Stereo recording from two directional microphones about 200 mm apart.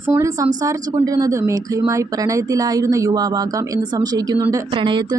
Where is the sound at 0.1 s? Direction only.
15° right (ahead or behind).